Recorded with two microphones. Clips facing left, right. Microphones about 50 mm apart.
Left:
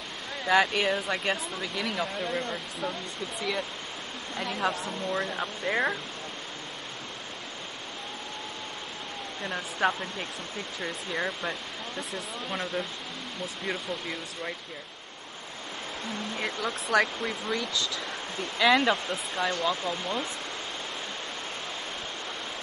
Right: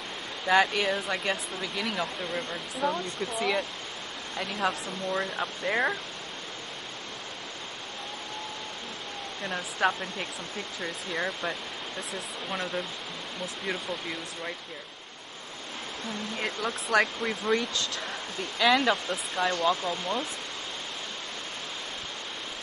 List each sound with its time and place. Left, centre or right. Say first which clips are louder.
0.5 s speech: even; centre
9.4 s speech: even; centre
16.3 s speech: even; centre
17.5 s speech: right 5 dB; right
18.6 s speech: left 1 dB; centre